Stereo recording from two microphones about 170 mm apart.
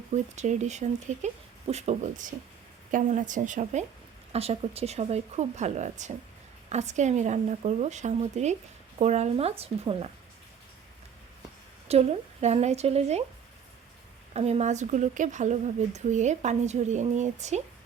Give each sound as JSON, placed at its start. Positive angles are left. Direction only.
{"t": 0.1, "sound": "speech", "side_deg": -45}
{"t": 11.9, "sound": "speech", "side_deg": -40}
{"t": 14.3, "sound": "speech", "side_deg": -40}